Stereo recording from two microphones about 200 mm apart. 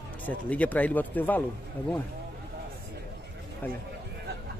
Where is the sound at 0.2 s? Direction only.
10° left (ahead or behind).